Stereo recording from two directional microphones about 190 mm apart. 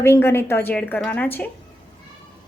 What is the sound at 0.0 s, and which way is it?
A woman's voice, 15° left (ahead or behind).